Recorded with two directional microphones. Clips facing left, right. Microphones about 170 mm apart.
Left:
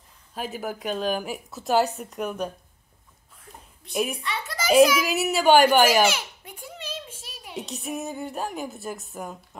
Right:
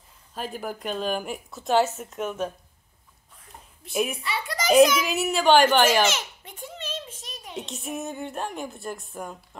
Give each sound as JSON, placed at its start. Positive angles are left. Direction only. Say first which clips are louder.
{"t": 0.3, "sound": "a woman's voice", "louder": "left 1 dB", "side_deg": 5}
{"t": 3.8, "sound": "a child's voice", "louder": "even", "side_deg": 0}